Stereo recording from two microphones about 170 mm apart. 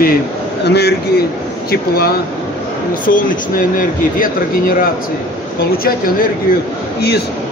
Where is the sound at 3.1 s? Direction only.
55° left (ahead or behind).